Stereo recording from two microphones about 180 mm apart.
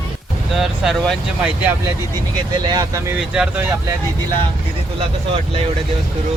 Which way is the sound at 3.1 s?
5° right (ahead or behind).